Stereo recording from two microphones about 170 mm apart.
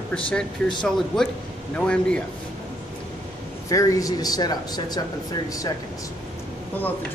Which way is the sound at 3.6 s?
20° left (ahead or behind).